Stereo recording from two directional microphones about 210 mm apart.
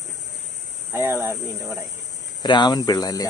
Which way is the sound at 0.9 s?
10° right (ahead or behind).